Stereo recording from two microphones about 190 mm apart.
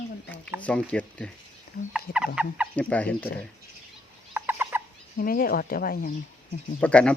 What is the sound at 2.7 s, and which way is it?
Speech, 5° left (ahead or behind).